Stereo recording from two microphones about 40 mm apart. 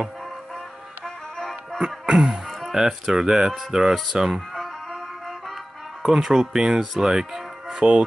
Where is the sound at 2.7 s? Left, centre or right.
Centre.